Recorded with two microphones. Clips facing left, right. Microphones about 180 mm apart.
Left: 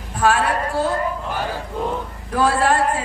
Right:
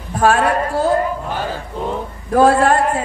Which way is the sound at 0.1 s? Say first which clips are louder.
Right 3 dB; 45° right (ahead or behind).